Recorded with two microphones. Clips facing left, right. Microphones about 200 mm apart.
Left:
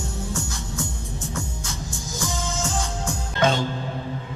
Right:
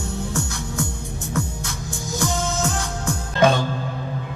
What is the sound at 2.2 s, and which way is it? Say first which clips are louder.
Music: right 5 dB; 65° right (ahead or behind).